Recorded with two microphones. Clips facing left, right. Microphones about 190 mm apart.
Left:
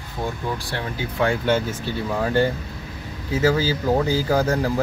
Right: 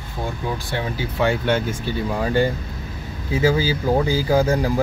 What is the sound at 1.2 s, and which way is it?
Speech, 5° right (ahead or behind).